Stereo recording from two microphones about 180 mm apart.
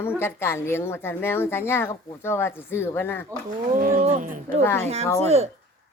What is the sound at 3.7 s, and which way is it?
Speech, 50° right (ahead or behind).